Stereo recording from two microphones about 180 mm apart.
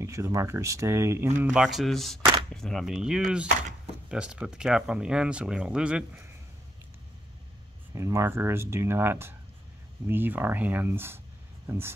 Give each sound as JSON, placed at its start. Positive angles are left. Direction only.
{"t": 0.0, "sound": "speech", "side_deg": -15}
{"t": 1.4, "sound": "speech", "side_deg": -5}
{"t": 7.9, "sound": "speech", "side_deg": -15}